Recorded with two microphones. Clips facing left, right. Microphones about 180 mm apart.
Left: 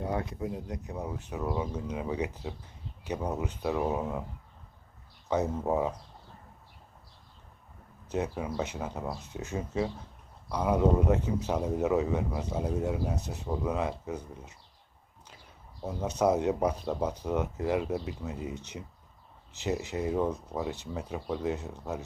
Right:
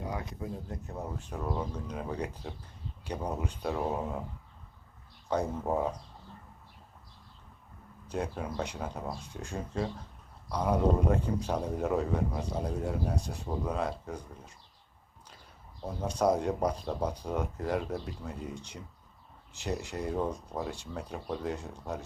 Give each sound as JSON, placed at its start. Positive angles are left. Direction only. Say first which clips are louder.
{"t": 0.0, "sound": "speech", "louder": "left 5 dB", "side_deg": 20}
{"t": 0.9, "sound": "speech", "louder": "left 2 dB", "side_deg": 5}
{"t": 5.3, "sound": "speech", "louder": "left 2 dB", "side_deg": 5}
{"t": 8.1, "sound": "speech", "louder": "left 3 dB", "side_deg": 5}
{"t": 15.8, "sound": "speech", "louder": "left 1 dB", "side_deg": 5}
{"t": 19.7, "sound": "speech", "louder": "left 3 dB", "side_deg": 5}